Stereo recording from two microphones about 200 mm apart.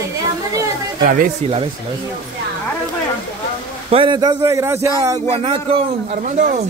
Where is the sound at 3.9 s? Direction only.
25° right (ahead or behind).